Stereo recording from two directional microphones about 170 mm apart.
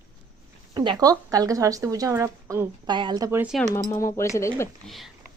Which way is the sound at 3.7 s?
20° left (ahead or behind).